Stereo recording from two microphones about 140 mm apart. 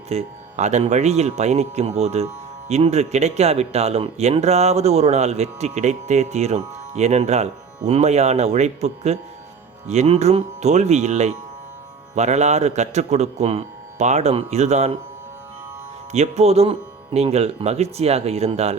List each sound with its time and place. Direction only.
0.1 s speech: 50° right (ahead or behind)
16.1 s speech: 50° right (ahead or behind)